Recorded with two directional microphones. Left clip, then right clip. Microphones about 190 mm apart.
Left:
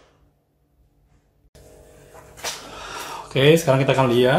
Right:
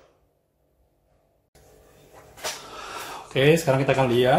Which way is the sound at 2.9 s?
5° left (ahead or behind).